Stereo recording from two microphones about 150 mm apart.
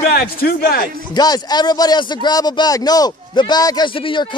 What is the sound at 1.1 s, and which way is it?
Speech, 25° left (ahead or behind).